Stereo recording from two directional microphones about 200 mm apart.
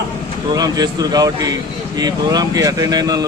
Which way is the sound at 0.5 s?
20° right (ahead or behind).